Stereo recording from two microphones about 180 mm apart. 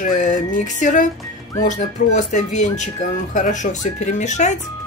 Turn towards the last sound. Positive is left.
turn(degrees=40)  # may be behind; listen again after turning